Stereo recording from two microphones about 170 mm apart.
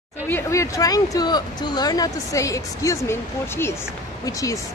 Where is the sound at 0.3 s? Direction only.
15° left (ahead or behind).